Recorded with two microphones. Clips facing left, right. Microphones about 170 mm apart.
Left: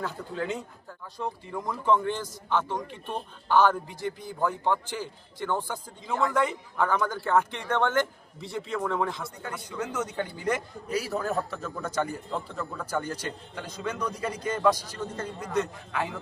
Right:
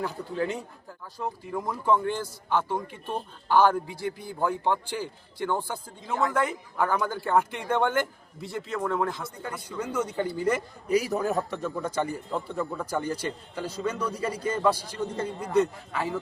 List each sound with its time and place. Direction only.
0.0 s a man's voice: 10° right (ahead or behind)